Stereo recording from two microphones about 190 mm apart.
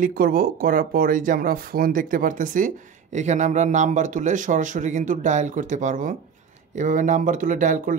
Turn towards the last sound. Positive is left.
turn(degrees=-45)  # may be behind; listen again after turning